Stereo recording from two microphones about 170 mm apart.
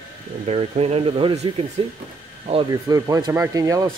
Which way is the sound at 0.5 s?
35° right (ahead or behind).